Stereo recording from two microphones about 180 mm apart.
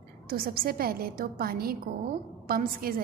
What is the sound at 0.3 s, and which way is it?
A woman's voice, 55° right (ahead or behind).